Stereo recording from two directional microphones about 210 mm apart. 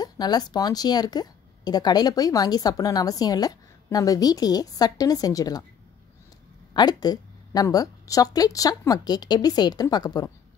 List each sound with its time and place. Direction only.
0.0 s a woman's voice: 20° left (ahead or behind)
6.7 s a woman's voice: 20° left (ahead or behind)